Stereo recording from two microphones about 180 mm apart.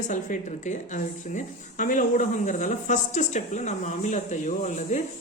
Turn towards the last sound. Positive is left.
turn(degrees=40)  # may be behind; listen again after turning